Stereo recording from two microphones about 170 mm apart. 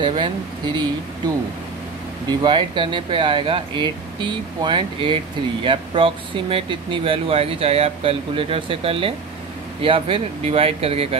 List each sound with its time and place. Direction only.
0.0 s speech: 30° right (ahead or behind)
2.2 s speech: 30° right (ahead or behind)